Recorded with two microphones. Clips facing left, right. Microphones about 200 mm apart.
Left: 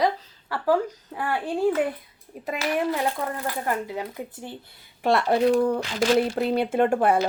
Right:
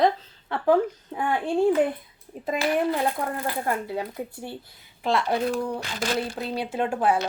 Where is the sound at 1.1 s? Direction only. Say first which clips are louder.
Right 3 dB; 5° left (ahead or behind).